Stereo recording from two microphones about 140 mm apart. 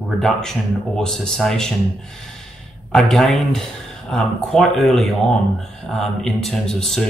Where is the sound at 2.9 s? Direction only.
5° left (ahead or behind).